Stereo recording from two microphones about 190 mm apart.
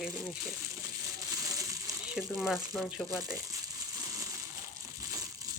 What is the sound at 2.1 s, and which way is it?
Speech, centre (ahead or behind).